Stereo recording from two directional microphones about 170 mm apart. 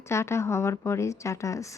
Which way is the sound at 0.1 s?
15° left (ahead or behind).